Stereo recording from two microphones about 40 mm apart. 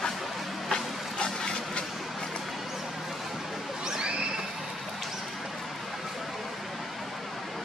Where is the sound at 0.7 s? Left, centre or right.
Left.